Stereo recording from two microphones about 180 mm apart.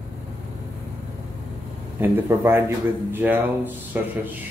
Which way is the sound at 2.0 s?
15° right (ahead or behind).